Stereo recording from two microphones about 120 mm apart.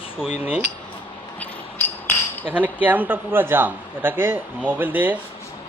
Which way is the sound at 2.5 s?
15° right (ahead or behind).